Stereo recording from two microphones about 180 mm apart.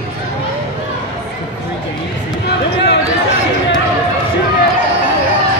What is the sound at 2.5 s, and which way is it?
Music, 70° left (ahead or behind).